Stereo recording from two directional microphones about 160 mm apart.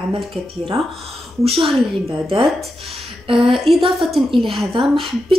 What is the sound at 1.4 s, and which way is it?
Speech, 40° right (ahead or behind).